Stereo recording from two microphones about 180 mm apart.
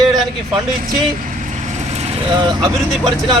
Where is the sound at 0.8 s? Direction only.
50° right (ahead or behind).